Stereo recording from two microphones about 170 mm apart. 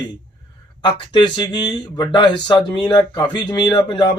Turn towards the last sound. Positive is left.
turn(degrees=25)  # may be behind; listen again after turning